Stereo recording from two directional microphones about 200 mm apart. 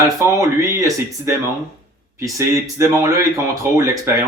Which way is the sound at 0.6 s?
15° right (ahead or behind).